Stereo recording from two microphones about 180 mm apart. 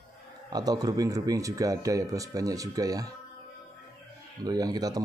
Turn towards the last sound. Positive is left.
turn(degrees=-20)  # may be behind; listen again after turning